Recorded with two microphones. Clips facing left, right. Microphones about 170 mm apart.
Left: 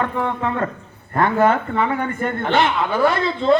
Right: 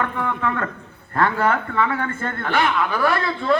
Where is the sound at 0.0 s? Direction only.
25° left (ahead or behind).